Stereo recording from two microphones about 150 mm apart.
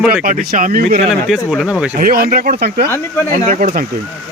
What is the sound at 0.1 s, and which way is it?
Speech, 70° right (ahead or behind).